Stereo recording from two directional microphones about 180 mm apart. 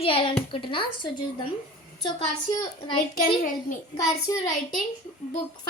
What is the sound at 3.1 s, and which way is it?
Speech, 50° left (ahead or behind).